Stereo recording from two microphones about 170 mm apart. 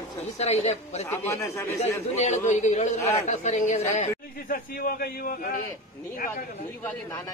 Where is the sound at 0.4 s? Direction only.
40° left (ahead or behind).